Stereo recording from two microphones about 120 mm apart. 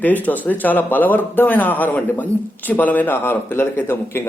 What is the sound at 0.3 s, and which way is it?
A man's voice, 15° left (ahead or behind).